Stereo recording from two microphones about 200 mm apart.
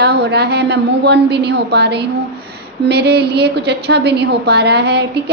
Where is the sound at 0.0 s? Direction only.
55° right (ahead or behind).